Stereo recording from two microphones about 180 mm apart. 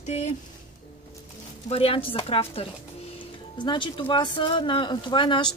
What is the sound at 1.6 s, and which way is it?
A woman's voice, 30° left (ahead or behind).